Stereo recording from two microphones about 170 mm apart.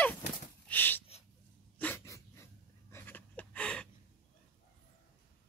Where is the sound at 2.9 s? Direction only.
10° left (ahead or behind).